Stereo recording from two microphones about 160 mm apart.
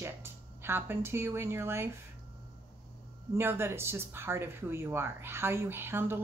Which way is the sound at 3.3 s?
15° right (ahead or behind).